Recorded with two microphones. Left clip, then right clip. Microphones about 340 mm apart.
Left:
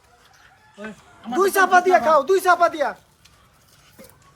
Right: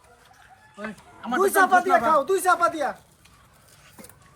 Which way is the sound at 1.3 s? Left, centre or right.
Left.